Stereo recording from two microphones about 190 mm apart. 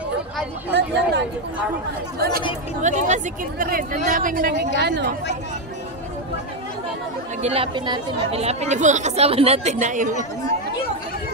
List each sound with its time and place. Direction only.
0.7 s chatter: 65° right (ahead or behind)
2.1 s speech: 55° right (ahead or behind)
2.8 s speech: 40° right (ahead or behind); by 5.0 s 60° right (ahead or behind)
7.4 s speech: 30° right (ahead or behind)